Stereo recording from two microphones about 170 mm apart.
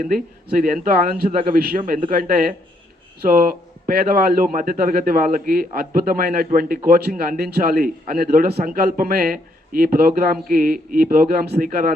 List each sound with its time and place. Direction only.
0.0 s a man's voice: 55° right (ahead or behind)